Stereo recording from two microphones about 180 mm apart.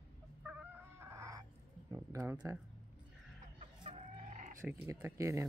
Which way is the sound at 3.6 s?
40° right (ahead or behind).